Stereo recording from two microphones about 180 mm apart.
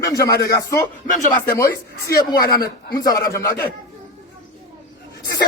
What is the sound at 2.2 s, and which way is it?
Speech, 20° left (ahead or behind).